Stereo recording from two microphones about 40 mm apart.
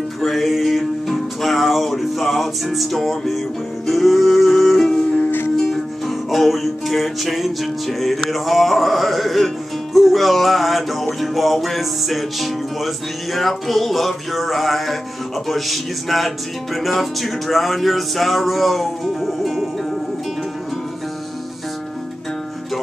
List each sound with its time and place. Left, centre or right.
0.2 s music: centre
4.8 s music: left
5.7 s music: centre